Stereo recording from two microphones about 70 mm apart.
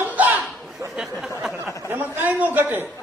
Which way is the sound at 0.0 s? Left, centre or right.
Right.